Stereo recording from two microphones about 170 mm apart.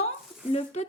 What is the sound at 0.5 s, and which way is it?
Speech, 40° left (ahead or behind).